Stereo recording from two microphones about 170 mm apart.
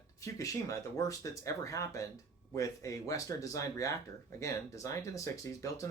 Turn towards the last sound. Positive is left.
turn(degrees=20)  # may be behind; listen again after turning